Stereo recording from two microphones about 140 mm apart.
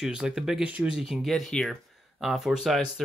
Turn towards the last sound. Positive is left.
turn(degrees=0)  # may be behind; listen again after turning